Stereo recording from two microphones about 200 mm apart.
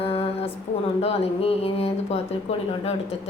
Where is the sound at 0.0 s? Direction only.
30° left (ahead or behind).